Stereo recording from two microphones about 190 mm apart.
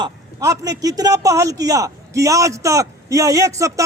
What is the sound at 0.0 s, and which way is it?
A man's voice, 20° right (ahead or behind).